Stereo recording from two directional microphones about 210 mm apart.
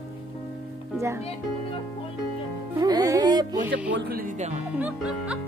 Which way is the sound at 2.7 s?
15° right (ahead or behind).